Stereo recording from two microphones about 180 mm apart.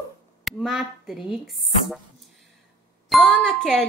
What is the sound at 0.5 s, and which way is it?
Speech, centre (ahead or behind).